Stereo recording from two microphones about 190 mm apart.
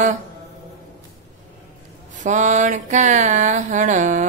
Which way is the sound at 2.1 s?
40° right (ahead or behind).